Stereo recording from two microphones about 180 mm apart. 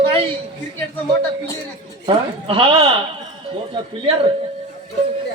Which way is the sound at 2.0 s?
30° right (ahead or behind).